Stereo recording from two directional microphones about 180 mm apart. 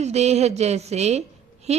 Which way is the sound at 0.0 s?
35° right (ahead or behind).